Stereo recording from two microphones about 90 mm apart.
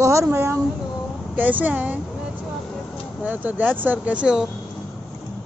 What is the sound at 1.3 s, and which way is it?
Speech, 20° right (ahead or behind).